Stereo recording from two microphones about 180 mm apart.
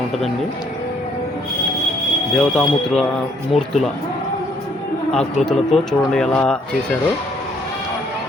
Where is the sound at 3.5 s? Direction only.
35° left (ahead or behind).